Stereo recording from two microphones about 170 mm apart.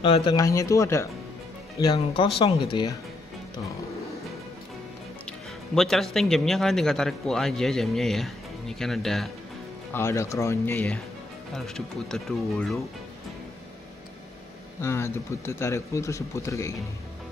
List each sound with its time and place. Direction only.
0.0 s speech: 30° left (ahead or behind)
5.8 s speech: centre (ahead or behind)
9.9 s speech: 15° left (ahead or behind); by 12.8 s centre (ahead or behind)
14.8 s speech: 15° left (ahead or behind)